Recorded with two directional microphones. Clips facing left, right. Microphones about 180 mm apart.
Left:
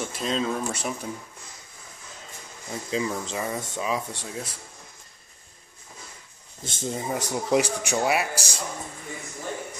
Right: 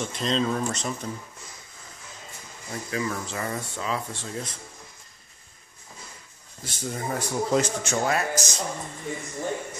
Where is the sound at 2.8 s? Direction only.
20° left (ahead or behind).